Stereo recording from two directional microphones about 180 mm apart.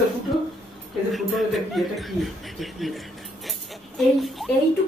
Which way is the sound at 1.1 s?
Centre (ahead or behind).